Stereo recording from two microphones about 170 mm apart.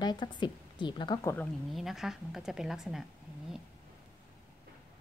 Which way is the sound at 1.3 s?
5° left (ahead or behind).